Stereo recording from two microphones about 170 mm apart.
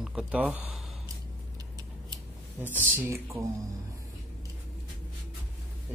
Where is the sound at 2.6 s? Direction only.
10° left (ahead or behind).